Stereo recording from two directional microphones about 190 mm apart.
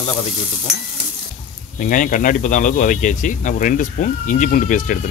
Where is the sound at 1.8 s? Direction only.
45° left (ahead or behind).